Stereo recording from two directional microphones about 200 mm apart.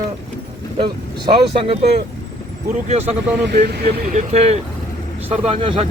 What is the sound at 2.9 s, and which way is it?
Speech, 30° right (ahead or behind).